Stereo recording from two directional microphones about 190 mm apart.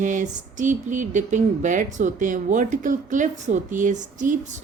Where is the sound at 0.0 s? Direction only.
40° right (ahead or behind).